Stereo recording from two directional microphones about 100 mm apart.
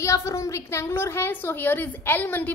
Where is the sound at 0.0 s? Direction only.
30° left (ahead or behind).